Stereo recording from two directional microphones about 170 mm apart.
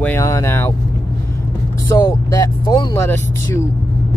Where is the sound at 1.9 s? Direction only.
20° left (ahead or behind).